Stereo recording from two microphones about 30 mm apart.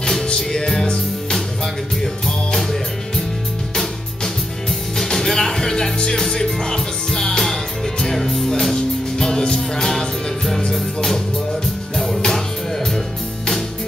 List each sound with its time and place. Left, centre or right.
0.5 s music: centre
2.2 s music: centre
4.9 s music: centre
9.8 s music: centre